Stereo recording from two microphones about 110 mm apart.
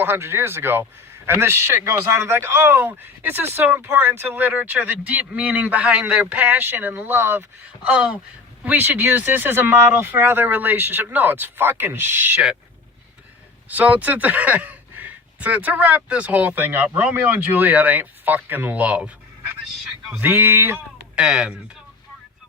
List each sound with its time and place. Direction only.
0.0 s speech: 20° right (ahead or behind)
13.7 s speech: 15° right (ahead or behind)
21.2 s speech: 10° right (ahead or behind)